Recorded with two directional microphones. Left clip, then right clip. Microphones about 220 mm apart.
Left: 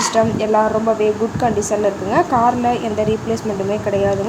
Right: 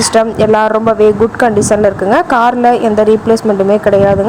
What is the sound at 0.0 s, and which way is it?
A woman's voice, 30° right (ahead or behind).